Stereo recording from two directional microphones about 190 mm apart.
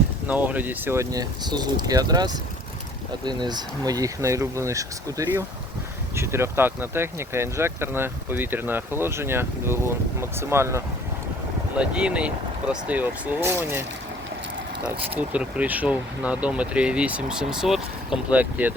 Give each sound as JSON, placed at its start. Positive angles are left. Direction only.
{"t": 0.3, "sound": "speech", "side_deg": -10}
{"t": 15.0, "sound": "speech", "side_deg": -10}